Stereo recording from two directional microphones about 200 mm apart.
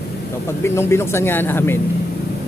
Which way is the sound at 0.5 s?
15° left (ahead or behind).